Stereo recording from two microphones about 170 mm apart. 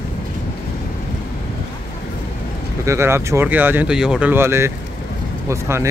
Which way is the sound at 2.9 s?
15° right (ahead or behind).